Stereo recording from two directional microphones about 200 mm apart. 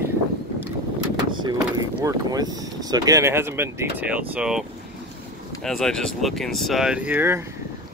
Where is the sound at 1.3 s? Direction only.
20° right (ahead or behind).